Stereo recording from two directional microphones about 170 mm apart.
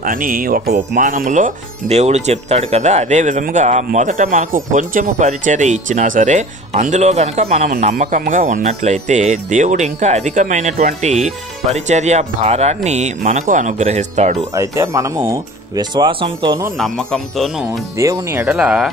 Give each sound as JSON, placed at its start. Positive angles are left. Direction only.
{"t": 0.0, "sound": "speech", "side_deg": -55}
{"t": 14.5, "sound": "speech", "side_deg": -20}
{"t": 16.7, "sound": "speech", "side_deg": 0}
{"t": 17.9, "sound": "speech", "side_deg": -15}